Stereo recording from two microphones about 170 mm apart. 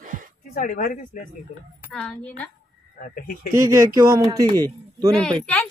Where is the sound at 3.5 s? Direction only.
20° right (ahead or behind).